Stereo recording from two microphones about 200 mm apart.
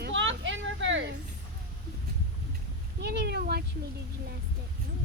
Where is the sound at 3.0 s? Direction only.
55° right (ahead or behind).